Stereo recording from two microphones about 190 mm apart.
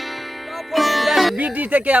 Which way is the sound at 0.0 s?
Centre (ahead or behind).